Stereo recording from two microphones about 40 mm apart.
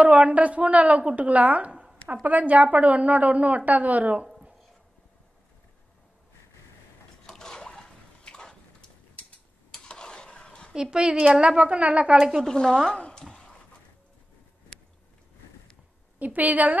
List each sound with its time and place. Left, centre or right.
0.0 s a woman's voice: right
7.2 s a sound: centre
9.8 s stir: left
10.7 s a woman's voice: right
12.4 s a woman's voice: centre
13.3 s a sound: left
16.3 s a woman's voice: right